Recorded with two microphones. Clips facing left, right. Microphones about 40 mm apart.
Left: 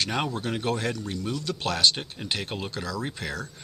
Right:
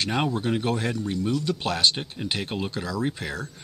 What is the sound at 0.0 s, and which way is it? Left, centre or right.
Speech, centre.